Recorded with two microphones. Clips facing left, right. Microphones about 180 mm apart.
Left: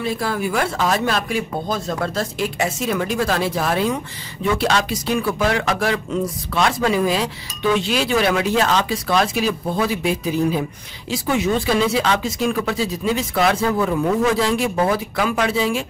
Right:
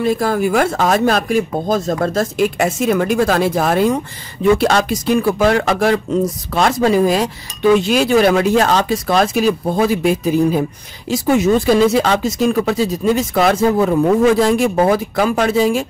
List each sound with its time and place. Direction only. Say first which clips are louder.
0.0 s speech: right 7 dB; 45° right (ahead or behind)